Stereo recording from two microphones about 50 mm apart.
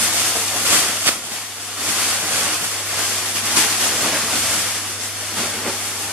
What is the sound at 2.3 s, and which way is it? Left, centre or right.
Waves, centre.